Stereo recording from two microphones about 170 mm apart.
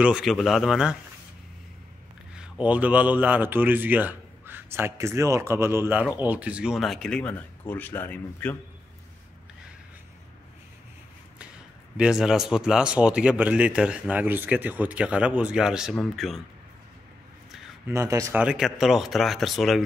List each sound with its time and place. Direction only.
0.0 s speech: centre (ahead or behind)
2.3 s a man's voice: 5° right (ahead or behind); by 8.5 s 10° left (ahead or behind)
12.0 s speech: 5° right (ahead or behind)
17.9 s a man's voice: 20° right (ahead or behind)
18.4 s speech: 5° right (ahead or behind)